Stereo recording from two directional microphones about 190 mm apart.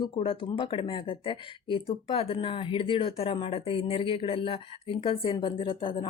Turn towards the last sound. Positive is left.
turn(degrees=25)  # may be behind; listen again after turning